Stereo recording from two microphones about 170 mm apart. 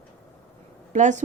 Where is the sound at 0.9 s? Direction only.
45° right (ahead or behind).